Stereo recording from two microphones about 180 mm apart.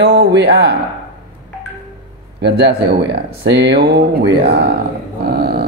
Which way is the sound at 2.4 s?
70° right (ahead or behind).